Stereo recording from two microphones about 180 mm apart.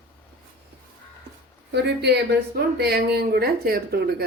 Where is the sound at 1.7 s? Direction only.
65° right (ahead or behind).